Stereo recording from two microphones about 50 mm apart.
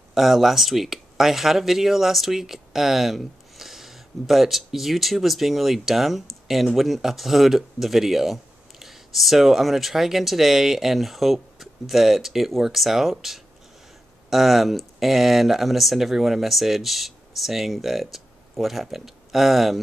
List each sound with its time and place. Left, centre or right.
0.1 s speech: centre